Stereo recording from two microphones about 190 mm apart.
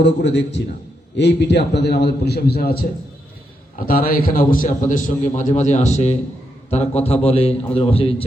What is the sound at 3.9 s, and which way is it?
A man's voice, 50° left (ahead or behind).